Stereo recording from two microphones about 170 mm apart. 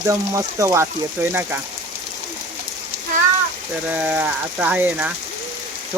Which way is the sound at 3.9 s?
10° right (ahead or behind).